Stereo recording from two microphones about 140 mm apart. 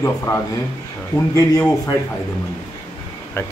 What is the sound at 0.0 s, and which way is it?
Speech, 20° left (ahead or behind).